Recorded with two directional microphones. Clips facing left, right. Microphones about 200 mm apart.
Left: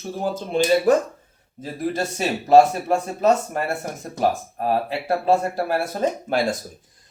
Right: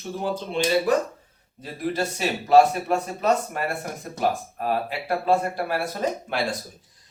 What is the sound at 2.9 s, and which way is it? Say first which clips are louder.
Speech: left 3 dB; 45° left (ahead or behind).